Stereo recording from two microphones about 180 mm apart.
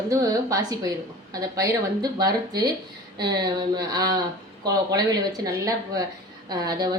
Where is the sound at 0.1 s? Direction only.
20° right (ahead or behind).